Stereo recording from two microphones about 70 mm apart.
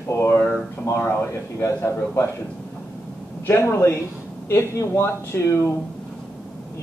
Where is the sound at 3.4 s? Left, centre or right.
Left.